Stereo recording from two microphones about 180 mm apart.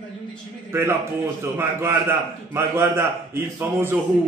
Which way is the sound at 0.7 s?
15° right (ahead or behind).